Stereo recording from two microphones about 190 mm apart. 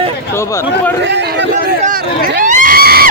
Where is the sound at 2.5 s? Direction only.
45° right (ahead or behind).